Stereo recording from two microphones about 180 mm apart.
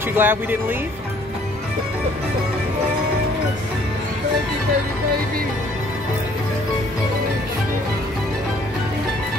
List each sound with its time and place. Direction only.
0.1 s speech: 10° right (ahead or behind)